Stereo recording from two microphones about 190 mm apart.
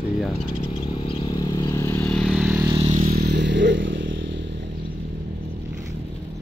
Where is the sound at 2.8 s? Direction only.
40° right (ahead or behind).